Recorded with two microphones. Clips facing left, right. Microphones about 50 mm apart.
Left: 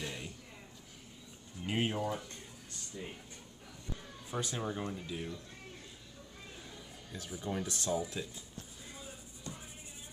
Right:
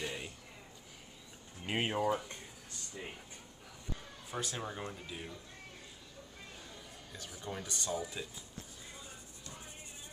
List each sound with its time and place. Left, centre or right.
0.0 s a sound: centre
1.7 s speech: right
2.0 s speech: centre
2.9 s speech: right
4.3 s speech: centre
7.1 s speech: centre